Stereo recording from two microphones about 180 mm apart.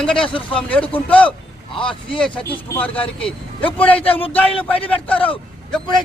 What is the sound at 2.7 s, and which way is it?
Speech, 10° left (ahead or behind).